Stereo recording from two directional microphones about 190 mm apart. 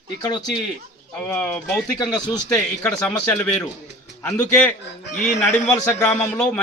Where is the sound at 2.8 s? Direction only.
5° left (ahead or behind).